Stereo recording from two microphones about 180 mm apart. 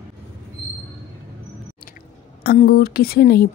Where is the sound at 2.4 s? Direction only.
55° left (ahead or behind).